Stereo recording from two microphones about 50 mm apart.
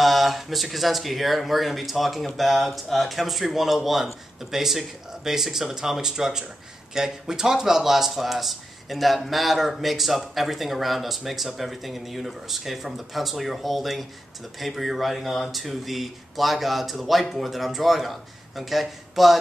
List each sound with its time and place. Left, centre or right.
0.0 s speech: centre